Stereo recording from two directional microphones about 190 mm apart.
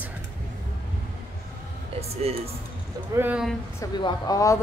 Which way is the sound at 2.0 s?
30° right (ahead or behind).